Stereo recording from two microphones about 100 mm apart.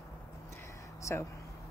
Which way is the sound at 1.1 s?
30° left (ahead or behind).